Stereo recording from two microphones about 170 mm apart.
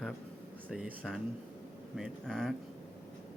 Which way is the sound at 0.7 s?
5° right (ahead or behind).